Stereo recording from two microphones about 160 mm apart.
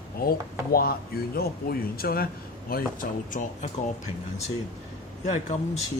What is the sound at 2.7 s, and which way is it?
Speech, 60° left (ahead or behind).